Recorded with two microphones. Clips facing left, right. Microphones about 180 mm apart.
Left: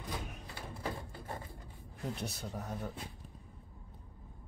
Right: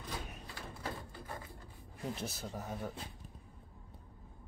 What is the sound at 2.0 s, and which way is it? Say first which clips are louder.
Speech: left 1 dB; centre (ahead or behind).